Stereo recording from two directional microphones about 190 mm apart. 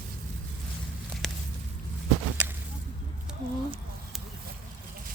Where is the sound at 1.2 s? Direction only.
Centre (ahead or behind).